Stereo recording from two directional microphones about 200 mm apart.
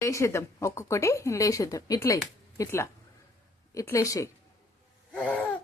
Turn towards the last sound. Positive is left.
turn(degrees=5)  # may be behind; listen again after turning